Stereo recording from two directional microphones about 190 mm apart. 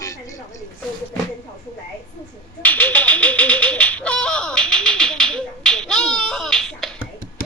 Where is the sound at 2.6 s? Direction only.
10° left (ahead or behind).